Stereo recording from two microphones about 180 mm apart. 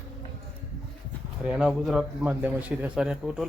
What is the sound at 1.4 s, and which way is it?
A man's voice, 5° right (ahead or behind).